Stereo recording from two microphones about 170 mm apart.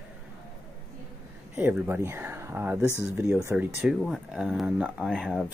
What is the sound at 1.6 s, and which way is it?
Speech, 10° right (ahead or behind).